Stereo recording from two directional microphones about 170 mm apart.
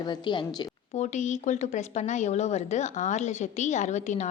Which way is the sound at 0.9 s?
45° left (ahead or behind).